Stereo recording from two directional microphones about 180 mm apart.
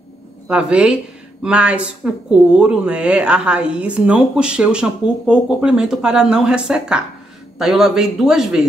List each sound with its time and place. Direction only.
0.5 s a woman's voice: 5° right (ahead or behind)